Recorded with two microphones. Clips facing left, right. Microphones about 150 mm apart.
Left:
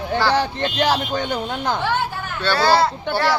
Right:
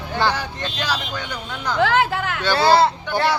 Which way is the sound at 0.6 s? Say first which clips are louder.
Left 6 dB; 55° left (ahead or behind).